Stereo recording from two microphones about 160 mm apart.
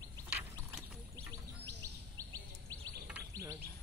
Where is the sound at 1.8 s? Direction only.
20° right (ahead or behind).